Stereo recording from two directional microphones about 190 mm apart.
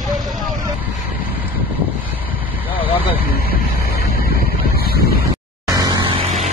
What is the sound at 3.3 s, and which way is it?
Vehicle, 55° left (ahead or behind).